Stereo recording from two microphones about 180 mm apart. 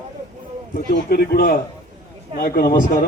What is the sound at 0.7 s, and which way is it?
A man's voice, 55° left (ahead or behind).